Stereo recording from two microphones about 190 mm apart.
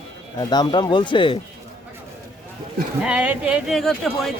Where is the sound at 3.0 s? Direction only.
5° right (ahead or behind).